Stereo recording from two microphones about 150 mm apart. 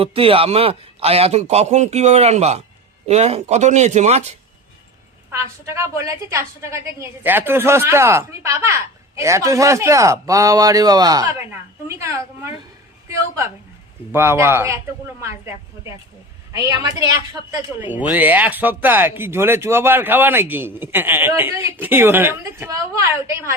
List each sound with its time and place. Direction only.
0.0 s a man's voice: 35° right (ahead or behind)
5.3 s a woman's voice: 20° right (ahead or behind)
14.1 s a woman's voice: 15° right (ahead or behind)
17.7 s speech: 10° right (ahead or behind)